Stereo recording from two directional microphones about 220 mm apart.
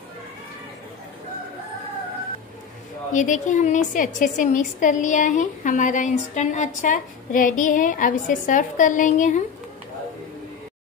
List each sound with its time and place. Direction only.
3.1 s a woman's voice: 35° left (ahead or behind)